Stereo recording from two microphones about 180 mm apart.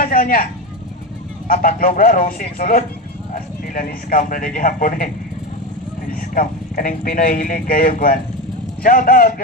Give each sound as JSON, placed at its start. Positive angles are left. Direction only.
{"t": 0.0, "sound": "a sound", "side_deg": 50}
{"t": 1.5, "sound": "speech", "side_deg": 50}
{"t": 6.1, "sound": "speech", "side_deg": 50}